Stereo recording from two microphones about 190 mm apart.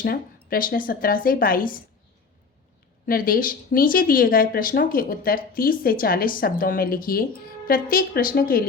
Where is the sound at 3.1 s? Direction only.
50° left (ahead or behind).